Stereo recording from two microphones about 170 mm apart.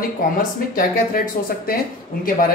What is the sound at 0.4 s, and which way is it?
Speech, 55° left (ahead or behind).